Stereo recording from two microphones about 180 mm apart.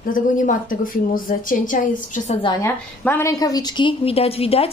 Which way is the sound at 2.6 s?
15° left (ahead or behind).